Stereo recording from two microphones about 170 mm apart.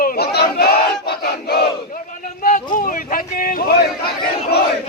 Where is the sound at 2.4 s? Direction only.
50° left (ahead or behind).